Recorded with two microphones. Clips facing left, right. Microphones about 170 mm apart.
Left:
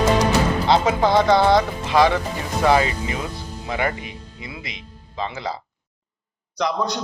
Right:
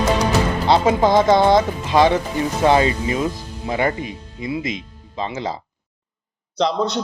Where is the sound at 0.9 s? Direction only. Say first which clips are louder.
Right 4 dB; 20° right (ahead or behind).